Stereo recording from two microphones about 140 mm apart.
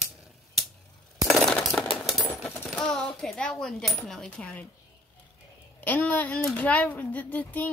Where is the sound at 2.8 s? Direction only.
5° left (ahead or behind).